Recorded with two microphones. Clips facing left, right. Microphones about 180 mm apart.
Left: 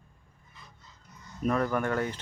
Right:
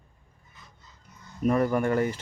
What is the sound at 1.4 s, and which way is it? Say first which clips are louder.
Speech: right 4 dB; 10° right (ahead or behind).